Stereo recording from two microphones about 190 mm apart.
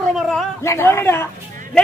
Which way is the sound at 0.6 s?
15° left (ahead or behind).